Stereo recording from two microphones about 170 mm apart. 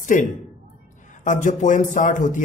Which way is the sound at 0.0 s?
50° left (ahead or behind).